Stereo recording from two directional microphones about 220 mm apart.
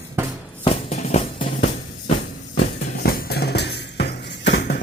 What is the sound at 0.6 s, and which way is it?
Music, 30° left (ahead or behind).